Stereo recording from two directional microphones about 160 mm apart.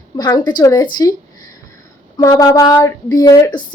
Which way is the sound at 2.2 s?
25° left (ahead or behind).